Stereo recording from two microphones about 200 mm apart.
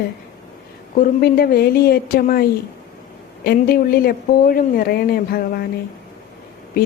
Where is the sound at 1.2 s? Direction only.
50° left (ahead or behind).